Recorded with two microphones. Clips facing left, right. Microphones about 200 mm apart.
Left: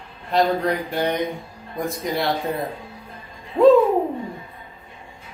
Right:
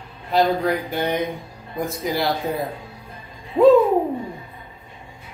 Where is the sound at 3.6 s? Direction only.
15° right (ahead or behind).